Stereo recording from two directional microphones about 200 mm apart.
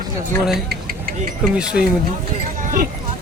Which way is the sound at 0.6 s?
45° right (ahead or behind).